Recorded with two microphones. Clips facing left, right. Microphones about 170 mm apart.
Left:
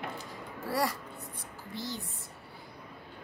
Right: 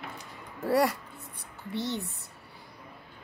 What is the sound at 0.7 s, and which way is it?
A woman's voice, 65° right (ahead or behind).